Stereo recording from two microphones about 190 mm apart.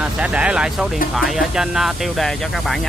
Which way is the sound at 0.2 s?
5° right (ahead or behind).